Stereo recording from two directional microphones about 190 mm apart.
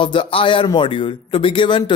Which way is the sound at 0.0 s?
25° left (ahead or behind).